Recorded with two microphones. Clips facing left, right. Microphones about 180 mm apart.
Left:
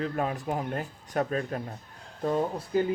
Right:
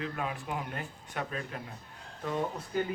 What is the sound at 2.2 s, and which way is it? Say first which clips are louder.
Speech: left 6 dB; 35° left (ahead or behind).